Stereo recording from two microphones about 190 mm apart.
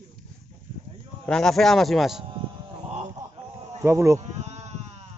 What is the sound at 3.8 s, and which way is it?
Speech, 15° right (ahead or behind).